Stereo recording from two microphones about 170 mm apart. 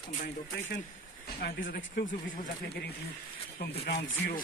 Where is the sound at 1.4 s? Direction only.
65° left (ahead or behind).